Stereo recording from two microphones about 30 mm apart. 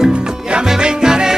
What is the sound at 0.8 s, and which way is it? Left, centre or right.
Music, right.